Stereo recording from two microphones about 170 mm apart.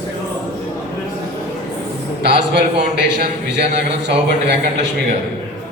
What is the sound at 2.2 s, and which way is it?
A man's voice, 75° right (ahead or behind).